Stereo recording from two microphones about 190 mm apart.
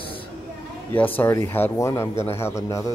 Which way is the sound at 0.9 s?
10° left (ahead or behind).